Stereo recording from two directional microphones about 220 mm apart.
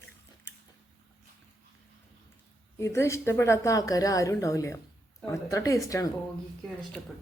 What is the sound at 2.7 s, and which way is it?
A woman's voice, 10° left (ahead or behind).